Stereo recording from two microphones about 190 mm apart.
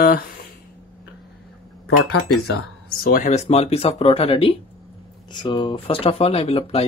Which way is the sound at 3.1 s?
40° left (ahead or behind).